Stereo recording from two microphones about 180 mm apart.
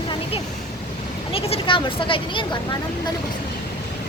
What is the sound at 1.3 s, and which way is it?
Speech, 30° left (ahead or behind).